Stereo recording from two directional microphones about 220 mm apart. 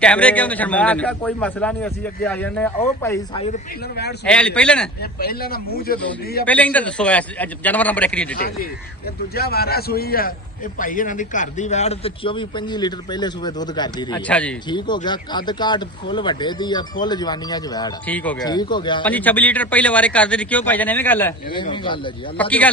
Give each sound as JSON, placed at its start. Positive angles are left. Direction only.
{"t": 0.0, "sound": "a man's voice", "side_deg": 5}
{"t": 3.3, "sound": "a man's voice", "side_deg": 25}
{"t": 4.3, "sound": "speech", "side_deg": 5}
{"t": 5.2, "sound": "speech", "side_deg": 45}
{"t": 6.4, "sound": "a man's voice", "side_deg": 5}
{"t": 8.4, "sound": "a man's voice", "side_deg": 45}
{"t": 14.3, "sound": "speech", "side_deg": 5}
{"t": 14.7, "sound": "a man's voice", "side_deg": 20}
{"t": 18.1, "sound": "a man's voice", "side_deg": 5}
{"t": 18.4, "sound": "a man's voice", "side_deg": 20}
{"t": 19.0, "sound": "a man's voice", "side_deg": 5}
{"t": 21.5, "sound": "a man's voice", "side_deg": 20}
{"t": 22.4, "sound": "a man's voice", "side_deg": 5}